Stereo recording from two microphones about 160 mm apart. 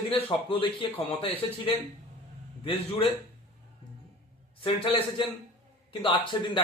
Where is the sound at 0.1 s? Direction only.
30° left (ahead or behind).